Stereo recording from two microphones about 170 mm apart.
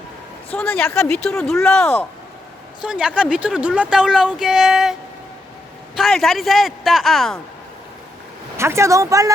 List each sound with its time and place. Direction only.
0.5 s speech: 10° left (ahead or behind)
1.1 s speech: 5° left (ahead or behind)
1.5 s speech: 15° left (ahead or behind)
2.8 s speech: 5° right (ahead or behind)
6.0 s speech: centre (ahead or behind)
8.5 s speech: 15° right (ahead or behind)